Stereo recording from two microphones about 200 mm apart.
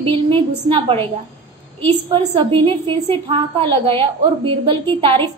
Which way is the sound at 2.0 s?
30° right (ahead or behind).